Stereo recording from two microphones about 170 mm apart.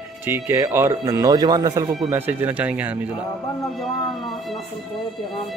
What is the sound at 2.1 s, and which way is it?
Speech, 10° right (ahead or behind).